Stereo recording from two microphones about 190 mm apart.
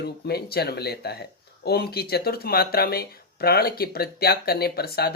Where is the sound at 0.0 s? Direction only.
55° left (ahead or behind).